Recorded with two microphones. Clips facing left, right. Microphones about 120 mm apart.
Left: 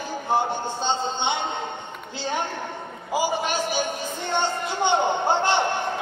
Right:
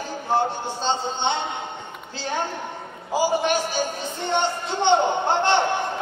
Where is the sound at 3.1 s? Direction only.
15° left (ahead or behind).